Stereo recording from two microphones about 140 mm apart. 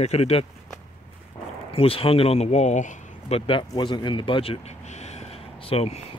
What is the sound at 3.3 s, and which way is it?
Speech, 35° left (ahead or behind).